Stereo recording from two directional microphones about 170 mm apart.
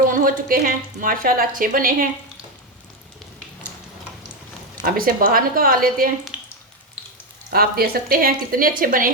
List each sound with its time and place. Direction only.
0.0 s a woman's voice: 55° right (ahead or behind)
4.8 s a woman's voice: 60° right (ahead or behind)
6.3 s a sound: 5° right (ahead or behind)
7.5 s a woman's voice: 60° right (ahead or behind)